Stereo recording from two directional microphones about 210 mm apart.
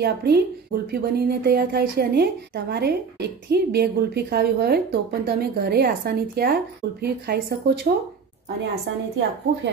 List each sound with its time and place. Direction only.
0.0 s a woman's voice: 50° right (ahead or behind)